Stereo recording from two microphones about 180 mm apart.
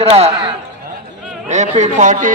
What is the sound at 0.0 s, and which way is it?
Speech, 35° right (ahead or behind).